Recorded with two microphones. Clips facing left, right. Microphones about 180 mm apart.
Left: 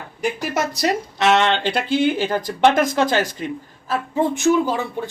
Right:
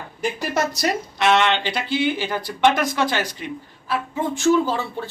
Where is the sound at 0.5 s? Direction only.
25° left (ahead or behind).